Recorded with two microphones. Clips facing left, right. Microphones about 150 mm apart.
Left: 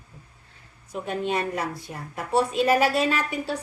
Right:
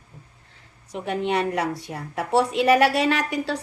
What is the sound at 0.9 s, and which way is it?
A woman's voice, 70° right (ahead or behind).